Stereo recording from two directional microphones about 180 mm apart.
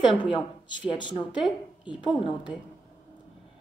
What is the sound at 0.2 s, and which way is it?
Speech, 25° left (ahead or behind).